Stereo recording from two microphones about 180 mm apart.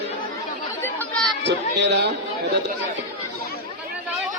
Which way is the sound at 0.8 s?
10° left (ahead or behind).